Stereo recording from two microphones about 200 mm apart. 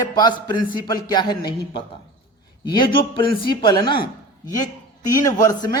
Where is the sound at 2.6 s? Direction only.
25° left (ahead or behind).